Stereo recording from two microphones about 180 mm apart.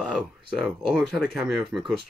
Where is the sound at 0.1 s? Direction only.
Centre (ahead or behind).